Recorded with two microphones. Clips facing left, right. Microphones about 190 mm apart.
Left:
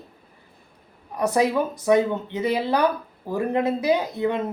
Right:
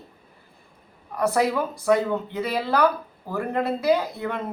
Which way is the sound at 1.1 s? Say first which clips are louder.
Left 1 dB; 20° left (ahead or behind).